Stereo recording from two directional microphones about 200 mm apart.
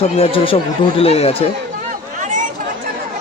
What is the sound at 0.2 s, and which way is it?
Speech, 25° left (ahead or behind).